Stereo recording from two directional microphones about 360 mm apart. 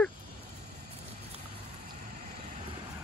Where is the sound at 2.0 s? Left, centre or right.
Right.